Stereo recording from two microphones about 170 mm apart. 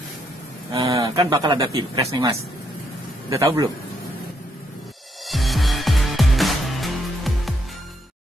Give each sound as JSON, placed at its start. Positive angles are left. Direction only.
{"t": 0.7, "sound": "speech", "side_deg": -20}
{"t": 5.3, "sound": "music", "side_deg": 0}